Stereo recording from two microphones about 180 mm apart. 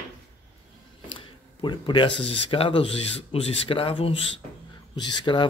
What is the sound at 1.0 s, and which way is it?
Speech, 30° left (ahead or behind).